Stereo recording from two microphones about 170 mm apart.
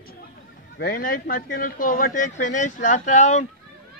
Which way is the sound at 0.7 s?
55° left (ahead or behind).